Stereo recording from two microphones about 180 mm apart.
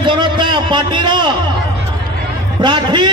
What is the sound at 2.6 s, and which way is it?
Speech, 25° right (ahead or behind).